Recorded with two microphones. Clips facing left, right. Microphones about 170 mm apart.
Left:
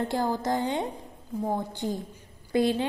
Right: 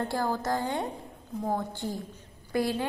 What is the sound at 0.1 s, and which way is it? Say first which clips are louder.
A woman's voice: left 2 dB; 20° left (ahead or behind).